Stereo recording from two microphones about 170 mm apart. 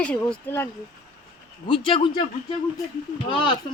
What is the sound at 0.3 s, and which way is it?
Speech, 10° left (ahead or behind).